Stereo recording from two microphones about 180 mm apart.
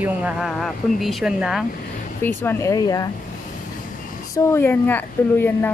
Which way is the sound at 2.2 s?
10° left (ahead or behind).